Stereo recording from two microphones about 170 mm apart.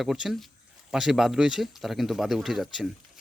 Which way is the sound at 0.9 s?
Centre (ahead or behind).